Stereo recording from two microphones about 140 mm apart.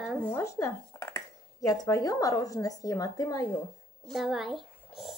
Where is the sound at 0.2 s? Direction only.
15° left (ahead or behind).